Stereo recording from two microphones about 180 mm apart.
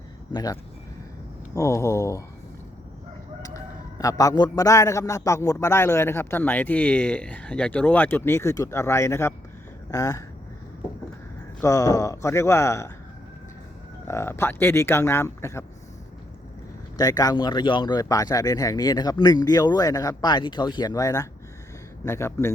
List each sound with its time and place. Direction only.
0.3 s a man's voice: 20° left (ahead or behind)
3.4 s a man's voice: 20° left (ahead or behind)
11.6 s a man's voice: 20° left (ahead or behind)
14.1 s a man's voice: 15° left (ahead or behind)
17.0 s a man's voice: 20° left (ahead or behind)